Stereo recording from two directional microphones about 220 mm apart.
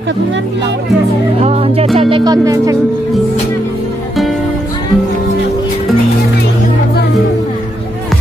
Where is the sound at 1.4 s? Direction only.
30° right (ahead or behind).